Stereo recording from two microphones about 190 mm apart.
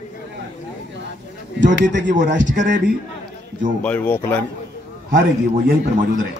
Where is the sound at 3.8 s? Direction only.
10° left (ahead or behind).